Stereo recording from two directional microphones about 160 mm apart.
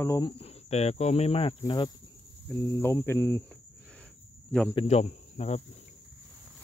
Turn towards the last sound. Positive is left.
turn(degrees=45)  # may be behind; listen again after turning